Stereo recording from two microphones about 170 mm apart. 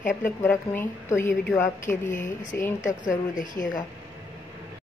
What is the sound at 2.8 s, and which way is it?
A woman's voice, 50° left (ahead or behind).